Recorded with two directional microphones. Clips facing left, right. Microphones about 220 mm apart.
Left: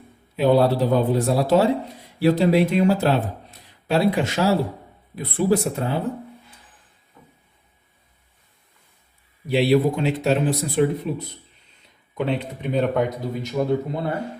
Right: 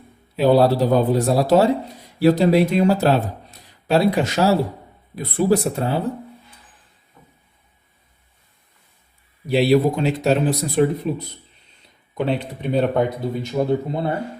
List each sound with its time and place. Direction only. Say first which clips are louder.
0.3 s speech: right 2 dB; 35° right (ahead or behind)
9.5 s speech: right 2 dB; 40° right (ahead or behind)
12.1 s speech: right 2 dB; 35° right (ahead or behind)